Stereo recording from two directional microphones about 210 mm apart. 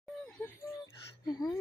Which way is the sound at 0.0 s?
5° left (ahead or behind).